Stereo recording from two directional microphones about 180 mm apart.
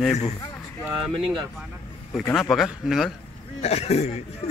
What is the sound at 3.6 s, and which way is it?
Speech, 35° left (ahead or behind).